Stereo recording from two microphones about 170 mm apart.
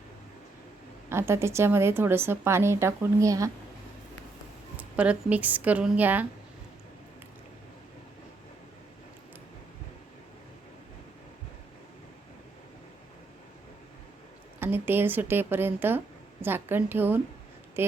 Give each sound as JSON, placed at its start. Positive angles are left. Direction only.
{"t": 1.1, "sound": "a woman's voice", "side_deg": -15}
{"t": 4.8, "sound": "a woman's voice", "side_deg": -10}
{"t": 14.6, "sound": "a woman's voice", "side_deg": -10}